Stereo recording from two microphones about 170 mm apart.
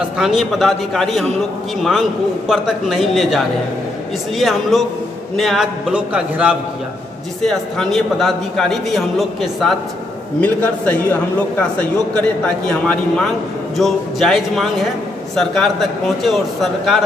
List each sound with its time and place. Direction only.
0.2 s a man's voice: centre (ahead or behind)